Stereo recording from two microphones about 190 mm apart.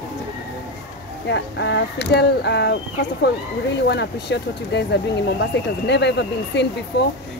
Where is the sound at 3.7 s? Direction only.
65° left (ahead or behind).